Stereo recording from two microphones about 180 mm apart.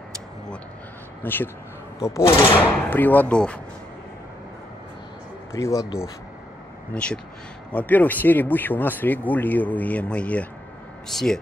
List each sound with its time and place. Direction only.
1.2 s speech: 10° left (ahead or behind)
5.5 s speech: 15° left (ahead or behind)
6.9 s speech: 5° left (ahead or behind)